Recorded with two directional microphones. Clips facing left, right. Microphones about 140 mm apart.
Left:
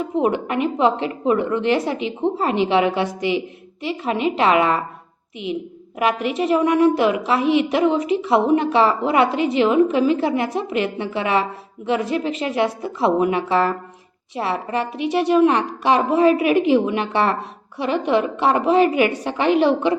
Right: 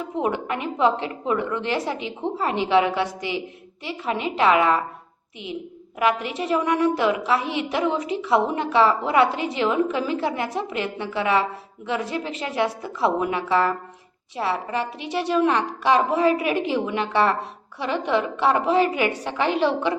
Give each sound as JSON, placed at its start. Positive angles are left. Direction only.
{"t": 0.0, "sound": "a woman's voice", "side_deg": 15}
{"t": 6.0, "sound": "a woman's voice", "side_deg": 20}